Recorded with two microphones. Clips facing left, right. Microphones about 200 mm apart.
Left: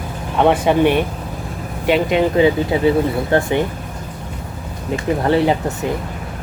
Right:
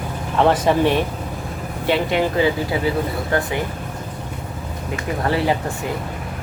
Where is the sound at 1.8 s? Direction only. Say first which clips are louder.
Left 4 dB; 15° left (ahead or behind).